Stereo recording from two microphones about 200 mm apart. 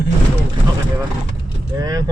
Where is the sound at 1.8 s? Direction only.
20° right (ahead or behind).